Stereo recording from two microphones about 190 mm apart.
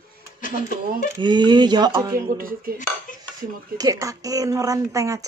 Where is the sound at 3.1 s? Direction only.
45° left (ahead or behind).